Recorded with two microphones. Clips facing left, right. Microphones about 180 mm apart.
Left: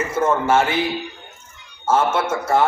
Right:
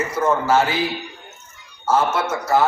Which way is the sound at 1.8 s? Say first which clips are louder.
Left 1 dB; 25° left (ahead or behind).